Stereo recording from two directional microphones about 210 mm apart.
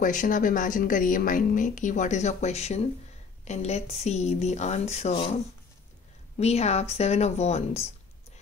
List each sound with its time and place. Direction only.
0.0 s a woman's voice: 40° left (ahead or behind)